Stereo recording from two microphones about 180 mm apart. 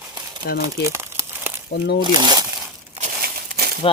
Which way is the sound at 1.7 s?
65° left (ahead or behind).